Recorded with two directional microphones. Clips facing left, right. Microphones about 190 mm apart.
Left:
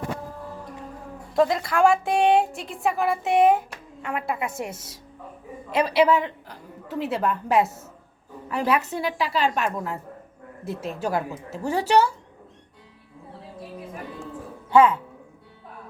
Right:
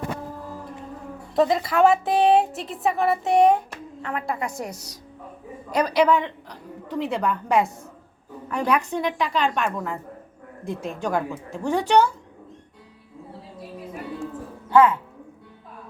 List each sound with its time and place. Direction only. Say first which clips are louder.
1.4 s a woman's voice: right 1 dB; centre (ahead or behind)
4.6 s a woman's voice: even; 25° left (ahead or behind)
5.7 s a woman's voice: even; 5° left (ahead or behind)
14.7 s speech: even; 15° left (ahead or behind)